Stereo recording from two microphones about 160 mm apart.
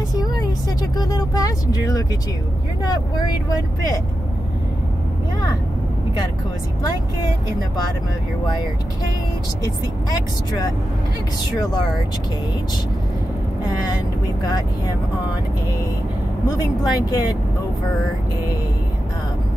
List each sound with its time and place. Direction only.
0.1 s vehicle: 25° left (ahead or behind)
2.8 s speech: 25° left (ahead or behind)
11.5 s speech: 25° left (ahead or behind)
16.4 s speech: 25° left (ahead or behind)